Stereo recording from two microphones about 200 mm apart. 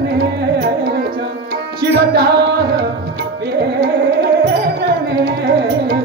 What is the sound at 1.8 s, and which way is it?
Tabla, 55° right (ahead or behind).